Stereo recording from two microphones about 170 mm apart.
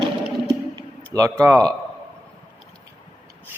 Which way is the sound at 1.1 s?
20° right (ahead or behind).